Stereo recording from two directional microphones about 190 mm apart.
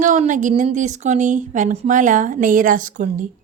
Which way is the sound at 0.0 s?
40° right (ahead or behind).